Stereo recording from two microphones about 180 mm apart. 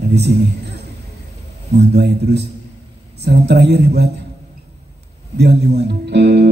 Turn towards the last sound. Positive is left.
turn(degrees=-70)  # may be behind; listen again after turning